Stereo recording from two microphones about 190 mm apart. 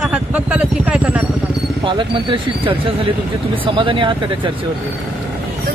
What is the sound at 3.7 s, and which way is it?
Speech, 25° right (ahead or behind).